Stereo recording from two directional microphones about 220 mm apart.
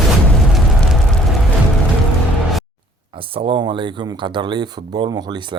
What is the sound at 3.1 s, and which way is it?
Speech, 25° right (ahead or behind).